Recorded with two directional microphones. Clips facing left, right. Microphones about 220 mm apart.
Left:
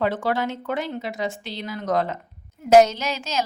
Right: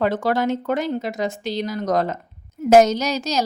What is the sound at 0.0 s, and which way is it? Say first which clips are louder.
A woman's voice: right 3 dB; 45° right (ahead or behind).